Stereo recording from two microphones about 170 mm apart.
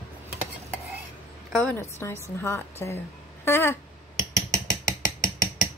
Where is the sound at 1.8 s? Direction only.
15° left (ahead or behind).